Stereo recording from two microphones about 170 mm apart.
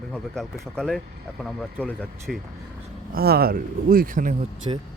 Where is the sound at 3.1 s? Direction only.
65° right (ahead or behind).